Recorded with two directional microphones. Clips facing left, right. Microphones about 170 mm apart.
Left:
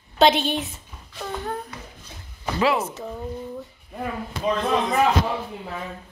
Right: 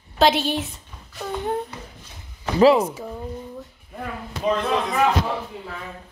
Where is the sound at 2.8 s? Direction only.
10° right (ahead or behind).